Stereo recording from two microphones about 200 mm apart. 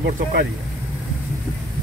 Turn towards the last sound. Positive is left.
turn(degrees=-50)  # may be behind; listen again after turning